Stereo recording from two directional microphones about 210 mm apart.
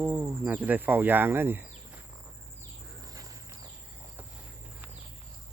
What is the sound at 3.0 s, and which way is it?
Cricket, 15° right (ahead or behind).